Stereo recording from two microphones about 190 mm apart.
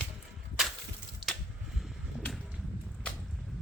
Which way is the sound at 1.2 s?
25° right (ahead or behind).